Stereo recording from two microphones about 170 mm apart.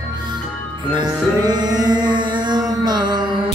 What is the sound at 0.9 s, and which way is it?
Music, 25° right (ahead or behind).